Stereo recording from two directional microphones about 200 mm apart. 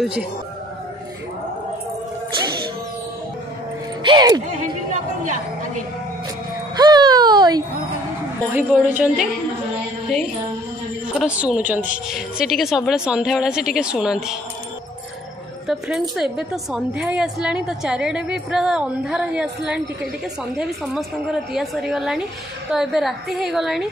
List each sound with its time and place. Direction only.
0.0 s a woman's voice: 5° right (ahead or behind)
4.0 s speech: 20° right (ahead or behind)
6.8 s a sound: 20° right (ahead or behind)
8.5 s a woman's voice: 5° right (ahead or behind)
11.1 s a woman's voice: 5° right (ahead or behind)
15.6 s a woman's voice: centre (ahead or behind)